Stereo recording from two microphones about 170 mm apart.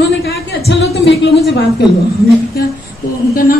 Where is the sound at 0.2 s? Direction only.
70° left (ahead or behind).